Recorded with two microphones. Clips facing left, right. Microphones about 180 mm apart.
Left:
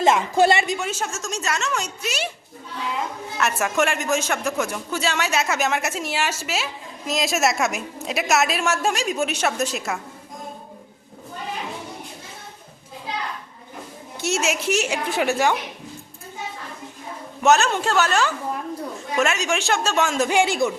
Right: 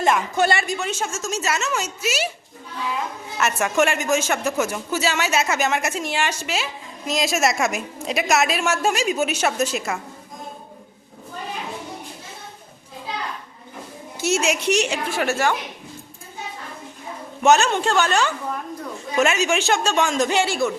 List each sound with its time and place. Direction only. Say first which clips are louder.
0.0 s speech: left 2 dB; 25° left (ahead or behind)
0.8 s speech: right 1 dB; centre (ahead or behind)
3.3 s speech: right 2 dB; centre (ahead or behind)
14.2 s speech: right 2 dB; centre (ahead or behind)
15.0 s a woman's voice: left 1 dB; 15° left (ahead or behind)
17.4 s speech: right 1 dB; centre (ahead or behind); by 20.7 s 15° left (ahead or behind)